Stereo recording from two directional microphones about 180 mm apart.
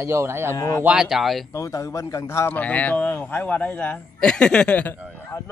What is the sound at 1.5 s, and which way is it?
A man's voice, 20° left (ahead or behind).